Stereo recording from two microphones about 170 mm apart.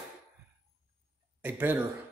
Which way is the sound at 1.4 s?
10° right (ahead or behind).